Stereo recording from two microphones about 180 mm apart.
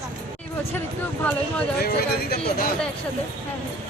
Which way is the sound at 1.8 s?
55° left (ahead or behind).